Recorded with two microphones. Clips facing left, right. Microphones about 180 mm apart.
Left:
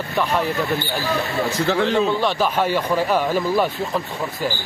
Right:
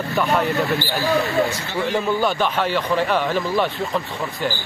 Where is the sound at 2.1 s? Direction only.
Centre (ahead or behind).